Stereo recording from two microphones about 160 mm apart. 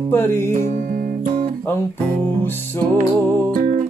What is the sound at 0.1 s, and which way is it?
Music, 15° left (ahead or behind).